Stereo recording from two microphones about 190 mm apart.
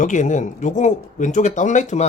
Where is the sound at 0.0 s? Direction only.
40° left (ahead or behind).